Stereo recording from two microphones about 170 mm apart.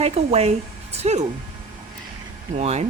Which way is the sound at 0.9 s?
40° right (ahead or behind).